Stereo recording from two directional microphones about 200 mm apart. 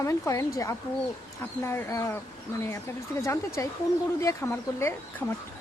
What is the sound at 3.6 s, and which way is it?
Speech, 15° left (ahead or behind).